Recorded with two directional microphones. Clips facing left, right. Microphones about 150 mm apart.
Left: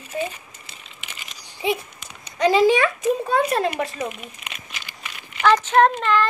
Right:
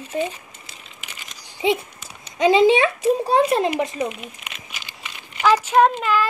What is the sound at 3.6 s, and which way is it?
Speech, 20° right (ahead or behind).